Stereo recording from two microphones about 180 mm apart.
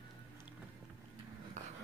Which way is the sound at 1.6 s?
40° right (ahead or behind).